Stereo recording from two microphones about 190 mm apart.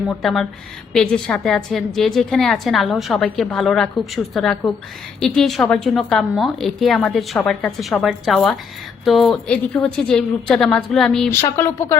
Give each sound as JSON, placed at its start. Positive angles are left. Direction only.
{"t": 0.1, "sound": "a woman's voice", "side_deg": 0}
{"t": 11.3, "sound": "speech", "side_deg": 15}